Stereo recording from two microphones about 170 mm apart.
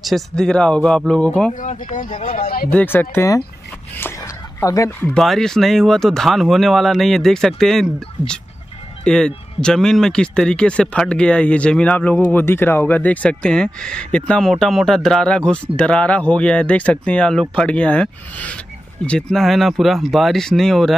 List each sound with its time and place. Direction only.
0.0 s speech: centre (ahead or behind)
1.5 s speech: 50° left (ahead or behind)
2.7 s speech: 10° left (ahead or behind)
4.6 s speech: 20° left (ahead or behind)
5.1 s speech: centre (ahead or behind)